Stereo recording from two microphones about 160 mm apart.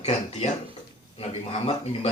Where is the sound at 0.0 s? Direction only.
40° left (ahead or behind).